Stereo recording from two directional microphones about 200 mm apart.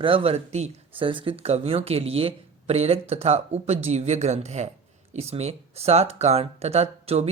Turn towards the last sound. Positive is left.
turn(degrees=-35)  # may be behind; listen again after turning